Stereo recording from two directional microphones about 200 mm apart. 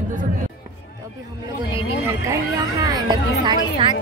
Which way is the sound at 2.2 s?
20° right (ahead or behind).